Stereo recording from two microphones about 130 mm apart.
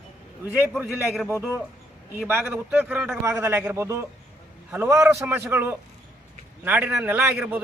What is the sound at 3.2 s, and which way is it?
A man's voice, 20° right (ahead or behind).